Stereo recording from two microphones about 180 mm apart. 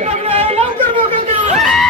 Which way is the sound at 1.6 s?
Centre (ahead or behind).